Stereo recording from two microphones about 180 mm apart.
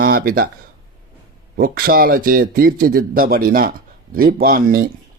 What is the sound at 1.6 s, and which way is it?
Speech, 55° right (ahead or behind).